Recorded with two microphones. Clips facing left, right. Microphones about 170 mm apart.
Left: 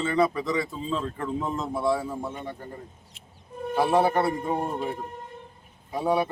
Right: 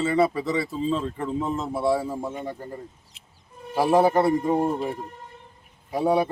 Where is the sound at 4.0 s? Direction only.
35° right (ahead or behind).